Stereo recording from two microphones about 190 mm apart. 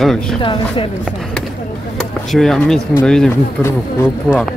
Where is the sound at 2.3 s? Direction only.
Centre (ahead or behind).